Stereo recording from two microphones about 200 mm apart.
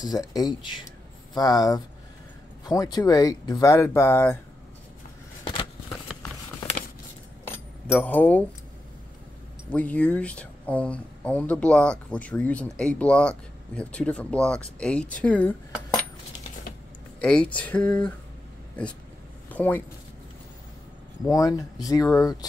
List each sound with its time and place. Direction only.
0.0 s speech: 20° left (ahead or behind)
5.4 s a sound: 25° left (ahead or behind)
7.4 s keys jangling: 10° left (ahead or behind)
7.9 s speech: 10° left (ahead or behind)
9.7 s speech: 5° left (ahead or behind)
17.2 s speech: 5° left (ahead or behind)
19.5 s speech: 10° left (ahead or behind)
21.3 s speech: 15° left (ahead or behind)